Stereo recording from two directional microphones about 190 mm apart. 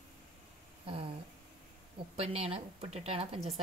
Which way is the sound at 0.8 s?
30° right (ahead or behind).